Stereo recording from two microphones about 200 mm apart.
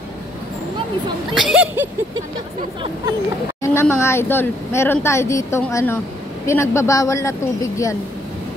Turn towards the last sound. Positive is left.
turn(degrees=15)  # may be behind; listen again after turning